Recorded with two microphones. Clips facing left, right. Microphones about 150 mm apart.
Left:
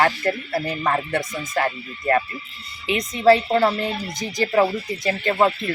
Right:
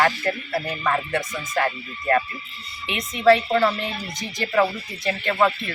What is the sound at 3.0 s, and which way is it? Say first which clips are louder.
A woman's voice: left 1 dB; 35° left (ahead or behind).